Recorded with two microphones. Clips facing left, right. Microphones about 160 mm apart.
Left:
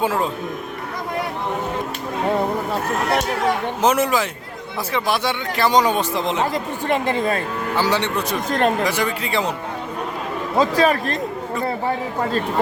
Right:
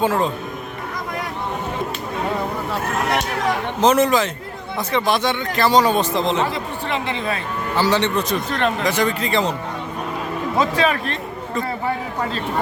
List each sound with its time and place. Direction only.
0.0 s speech: 10° left (ahead or behind)
3.8 s speech: 10° left (ahead or behind)
6.5 s speech: 45° left (ahead or behind)
7.8 s speech: 10° left (ahead or behind)
8.4 s speech: 40° left (ahead or behind)
8.8 s speech: 10° left (ahead or behind)
10.6 s speech: 35° left (ahead or behind)